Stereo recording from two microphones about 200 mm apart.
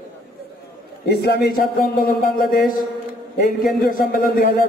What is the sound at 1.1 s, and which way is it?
Speech, 55° left (ahead or behind).